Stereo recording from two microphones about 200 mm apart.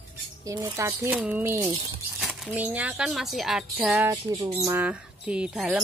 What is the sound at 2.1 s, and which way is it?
Speech, centre (ahead or behind).